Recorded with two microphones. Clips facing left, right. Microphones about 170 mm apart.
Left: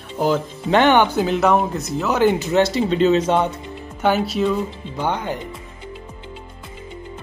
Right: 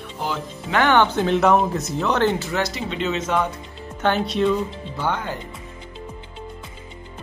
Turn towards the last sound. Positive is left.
turn(degrees=20)  # may be behind; listen again after turning